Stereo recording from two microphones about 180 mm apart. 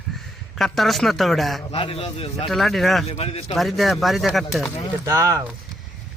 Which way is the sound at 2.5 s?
Centre (ahead or behind).